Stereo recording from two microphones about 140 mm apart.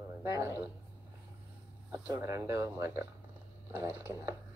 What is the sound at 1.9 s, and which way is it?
Speech, 20° right (ahead or behind).